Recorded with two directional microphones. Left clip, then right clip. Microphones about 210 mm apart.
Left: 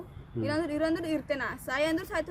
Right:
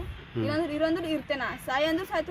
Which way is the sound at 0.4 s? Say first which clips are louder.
Right 2 dB; 20° left (ahead or behind).